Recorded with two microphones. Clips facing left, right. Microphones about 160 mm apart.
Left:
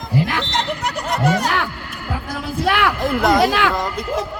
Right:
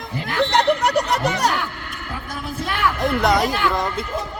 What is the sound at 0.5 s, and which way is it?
Snicker, 65° right (ahead or behind).